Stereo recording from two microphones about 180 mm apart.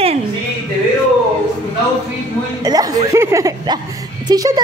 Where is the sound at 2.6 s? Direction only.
20° right (ahead or behind).